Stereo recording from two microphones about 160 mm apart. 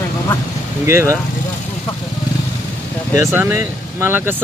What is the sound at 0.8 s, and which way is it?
Speech, 15° right (ahead or behind).